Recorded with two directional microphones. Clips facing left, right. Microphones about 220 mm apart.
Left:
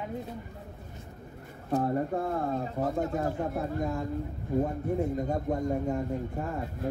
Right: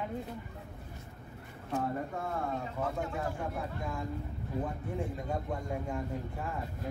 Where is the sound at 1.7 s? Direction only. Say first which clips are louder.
Left 7 dB; 35° left (ahead or behind).